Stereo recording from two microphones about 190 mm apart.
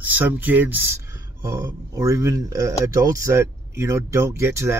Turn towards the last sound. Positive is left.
turn(degrees=-15)  # may be behind; listen again after turning